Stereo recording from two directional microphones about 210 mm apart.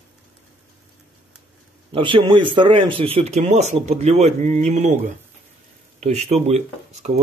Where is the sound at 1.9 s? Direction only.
25° right (ahead or behind).